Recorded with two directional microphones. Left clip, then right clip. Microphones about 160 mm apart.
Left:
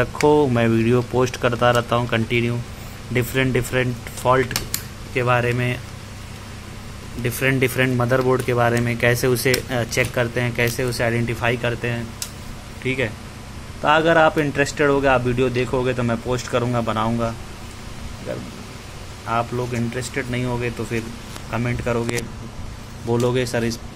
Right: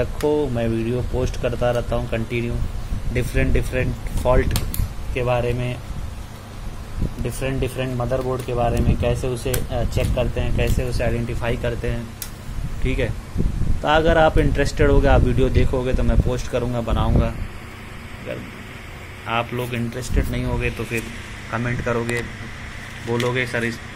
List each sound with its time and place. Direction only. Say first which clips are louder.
0.3 s speech: left 5 dB; 15° left (ahead or behind)
7.2 s speech: left 6 dB; 20° left (ahead or behind)
19.2 s speech: left 1 dB; centre (ahead or behind)
21.5 s speech: even; 15° left (ahead or behind)
23.0 s speech: left 2 dB; 20° left (ahead or behind)